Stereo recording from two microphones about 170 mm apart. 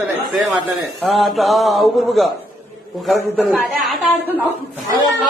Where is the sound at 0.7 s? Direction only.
Centre (ahead or behind).